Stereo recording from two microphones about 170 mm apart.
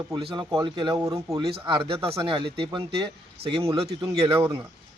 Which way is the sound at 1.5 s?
30° right (ahead or behind).